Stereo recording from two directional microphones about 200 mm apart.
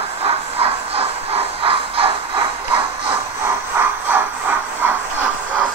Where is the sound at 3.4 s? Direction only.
10° right (ahead or behind).